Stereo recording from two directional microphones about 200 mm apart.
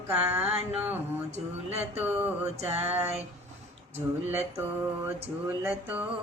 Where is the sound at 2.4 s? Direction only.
30° right (ahead or behind).